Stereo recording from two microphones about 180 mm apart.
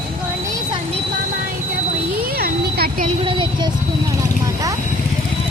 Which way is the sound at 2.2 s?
55° right (ahead or behind).